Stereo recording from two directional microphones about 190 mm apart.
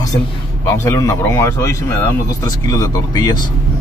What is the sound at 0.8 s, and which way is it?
Speech, 15° left (ahead or behind).